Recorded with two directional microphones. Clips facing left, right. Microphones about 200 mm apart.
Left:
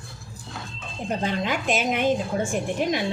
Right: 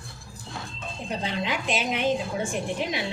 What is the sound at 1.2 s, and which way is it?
A woman's voice, 45° left (ahead or behind).